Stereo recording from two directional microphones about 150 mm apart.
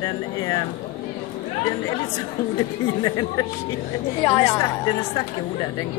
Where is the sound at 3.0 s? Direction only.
25° left (ahead or behind).